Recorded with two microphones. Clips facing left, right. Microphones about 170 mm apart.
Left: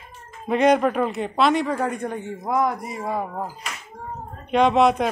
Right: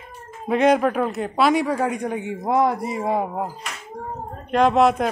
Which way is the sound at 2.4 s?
25° right (ahead or behind).